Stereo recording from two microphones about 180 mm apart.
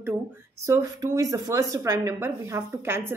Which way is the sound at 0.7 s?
20° right (ahead or behind).